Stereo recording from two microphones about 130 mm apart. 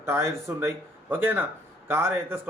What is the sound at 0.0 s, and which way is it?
A man's voice, 20° right (ahead or behind).